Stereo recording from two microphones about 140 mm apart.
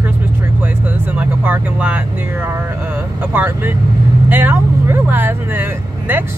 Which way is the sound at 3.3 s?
15° right (ahead or behind).